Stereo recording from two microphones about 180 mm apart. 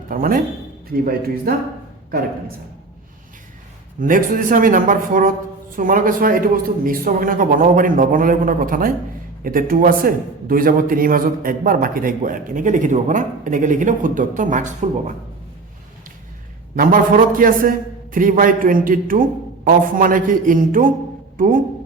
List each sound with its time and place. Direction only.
0.1 s a man's voice: 50° right (ahead or behind)
1.5 s a man's voice: 55° right (ahead or behind)
4.0 s a man's voice: 50° right (ahead or behind)
16.7 s a man's voice: 50° right (ahead or behind)